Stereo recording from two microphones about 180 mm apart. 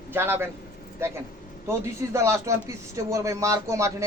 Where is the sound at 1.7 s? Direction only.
15° right (ahead or behind).